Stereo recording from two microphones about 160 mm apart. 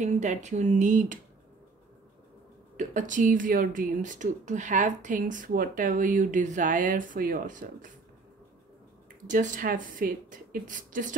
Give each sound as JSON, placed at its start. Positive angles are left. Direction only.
{"t": 0.0, "sound": "speech", "side_deg": -50}
{"t": 2.8, "sound": "speech", "side_deg": -50}
{"t": 9.3, "sound": "speech", "side_deg": -55}